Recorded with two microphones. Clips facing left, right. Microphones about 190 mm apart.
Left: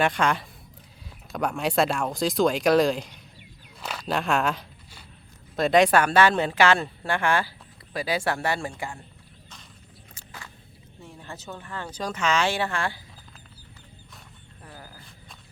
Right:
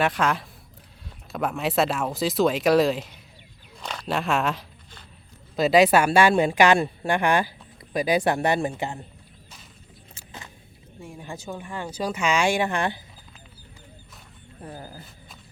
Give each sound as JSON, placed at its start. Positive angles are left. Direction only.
{"t": 0.0, "sound": "speech", "side_deg": 0}
{"t": 3.8, "sound": "walk", "side_deg": 5}
{"t": 5.5, "sound": "speech", "side_deg": -5}
{"t": 11.0, "sound": "speech", "side_deg": -15}
{"t": 14.6, "sound": "speech", "side_deg": -25}